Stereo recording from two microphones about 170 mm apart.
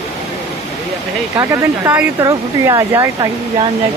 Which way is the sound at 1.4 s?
15° right (ahead or behind).